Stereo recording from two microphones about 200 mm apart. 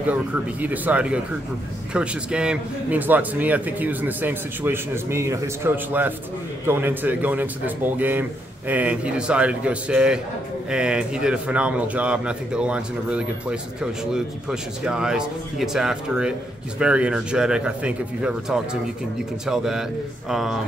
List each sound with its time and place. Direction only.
0.0 s a man's voice: 10° right (ahead or behind)